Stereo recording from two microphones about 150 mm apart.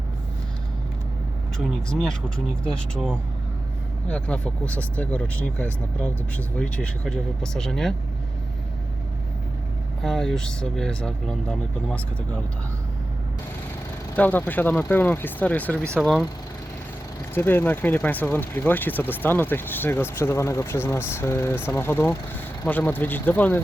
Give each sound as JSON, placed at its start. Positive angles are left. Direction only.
{"t": 1.5, "sound": "speech", "side_deg": 5}
{"t": 4.1, "sound": "speech", "side_deg": 10}
{"t": 10.0, "sound": "speech", "side_deg": 0}
{"t": 14.2, "sound": "speech", "side_deg": 10}
{"t": 15.8, "sound": "speech", "side_deg": -15}
{"t": 17.3, "sound": "speech", "side_deg": 15}